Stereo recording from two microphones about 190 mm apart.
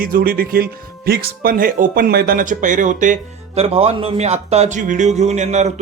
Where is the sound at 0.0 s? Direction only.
50° right (ahead or behind).